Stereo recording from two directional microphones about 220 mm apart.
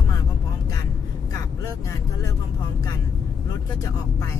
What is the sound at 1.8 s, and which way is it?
Speech, 15° left (ahead or behind).